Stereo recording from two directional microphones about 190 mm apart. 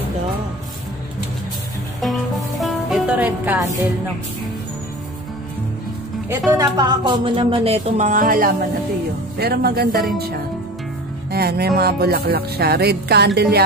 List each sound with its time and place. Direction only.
2.6 s music: 5° right (ahead or behind)
6.2 s speech: 15° right (ahead or behind); by 13.7 s 60° right (ahead or behind)